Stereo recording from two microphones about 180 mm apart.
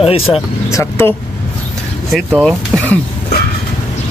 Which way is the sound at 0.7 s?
15° left (ahead or behind).